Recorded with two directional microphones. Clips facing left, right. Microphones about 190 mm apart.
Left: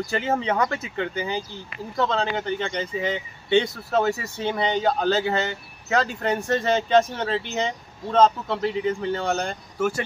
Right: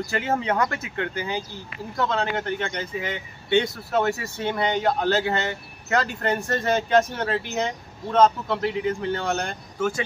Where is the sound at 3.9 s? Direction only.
5° right (ahead or behind).